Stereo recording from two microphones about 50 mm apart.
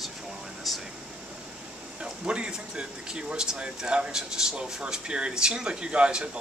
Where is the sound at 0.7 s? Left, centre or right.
Centre.